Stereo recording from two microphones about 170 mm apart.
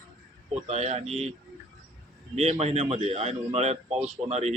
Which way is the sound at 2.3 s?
40° right (ahead or behind).